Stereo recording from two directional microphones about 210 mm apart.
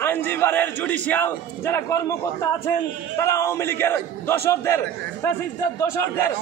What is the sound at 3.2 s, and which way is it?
A man's voice, 15° left (ahead or behind).